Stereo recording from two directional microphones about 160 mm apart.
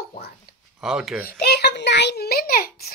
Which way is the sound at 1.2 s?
85° left.